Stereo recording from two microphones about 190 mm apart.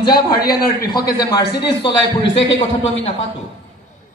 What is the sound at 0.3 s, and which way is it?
Speech, 55° left (ahead or behind).